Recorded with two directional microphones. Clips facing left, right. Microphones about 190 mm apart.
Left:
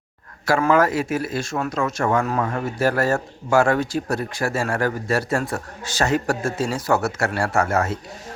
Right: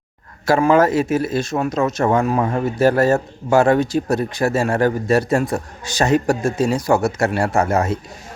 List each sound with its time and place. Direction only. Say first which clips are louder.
0.4 s speech: right 4 dB; 25° right (ahead or behind)